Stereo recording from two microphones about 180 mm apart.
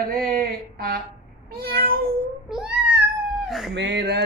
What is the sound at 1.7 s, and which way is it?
Cat, 55° right (ahead or behind).